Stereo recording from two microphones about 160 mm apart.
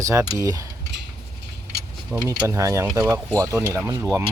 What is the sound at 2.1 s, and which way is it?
Speech, 20° right (ahead or behind).